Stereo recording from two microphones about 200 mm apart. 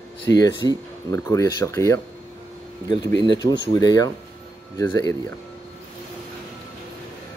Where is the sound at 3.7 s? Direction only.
20° left (ahead or behind).